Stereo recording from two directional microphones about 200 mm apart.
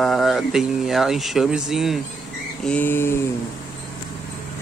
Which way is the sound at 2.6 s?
5° left (ahead or behind).